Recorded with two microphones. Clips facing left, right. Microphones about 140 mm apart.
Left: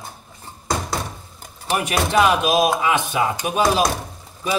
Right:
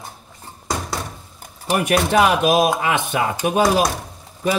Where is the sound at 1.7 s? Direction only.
55° right (ahead or behind).